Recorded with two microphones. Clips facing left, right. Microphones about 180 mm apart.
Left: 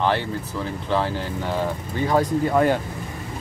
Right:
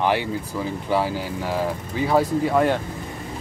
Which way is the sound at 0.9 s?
10° right (ahead or behind).